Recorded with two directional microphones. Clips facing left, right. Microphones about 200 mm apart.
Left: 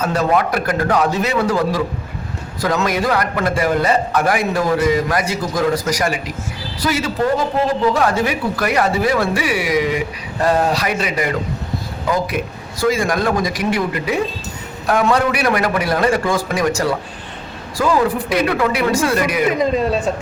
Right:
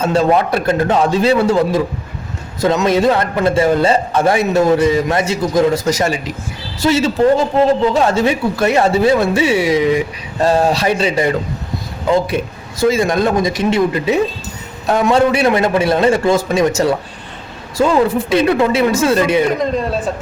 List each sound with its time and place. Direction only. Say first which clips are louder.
0.0 s a man's voice: right 3 dB; 25° right (ahead or behind)
19.5 s speech: even; 5° left (ahead or behind)